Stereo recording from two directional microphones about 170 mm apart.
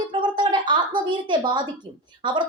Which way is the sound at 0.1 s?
30° right (ahead or behind).